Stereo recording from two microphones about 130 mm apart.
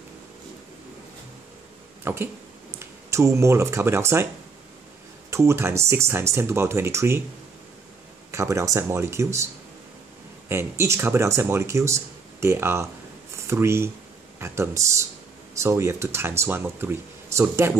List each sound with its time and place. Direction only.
2.1 s speech: 20° right (ahead or behind)
5.3 s speech: 20° right (ahead or behind)
8.3 s speech: 20° right (ahead or behind)
10.5 s speech: 20° right (ahead or behind)